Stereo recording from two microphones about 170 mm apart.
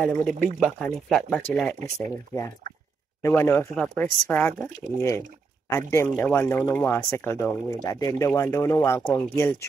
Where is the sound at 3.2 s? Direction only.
15° left (ahead or behind).